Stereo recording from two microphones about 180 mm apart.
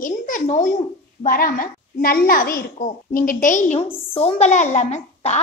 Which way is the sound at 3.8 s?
35° left (ahead or behind).